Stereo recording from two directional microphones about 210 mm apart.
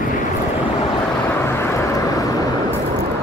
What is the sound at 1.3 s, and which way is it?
Vehicle, 10° left (ahead or behind).